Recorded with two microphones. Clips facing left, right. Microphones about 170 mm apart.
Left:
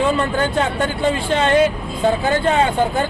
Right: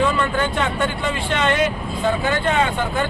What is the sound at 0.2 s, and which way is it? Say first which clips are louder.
Speech: left 2 dB; 35° left (ahead or behind).